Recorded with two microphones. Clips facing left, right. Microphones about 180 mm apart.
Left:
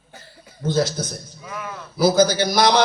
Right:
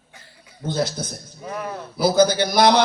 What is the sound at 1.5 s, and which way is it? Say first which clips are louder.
Speech: right 4 dB; 35° right (ahead or behind).